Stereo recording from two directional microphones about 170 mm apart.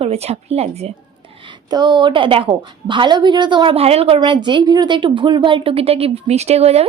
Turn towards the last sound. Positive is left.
turn(degrees=-40)  # may be behind; listen again after turning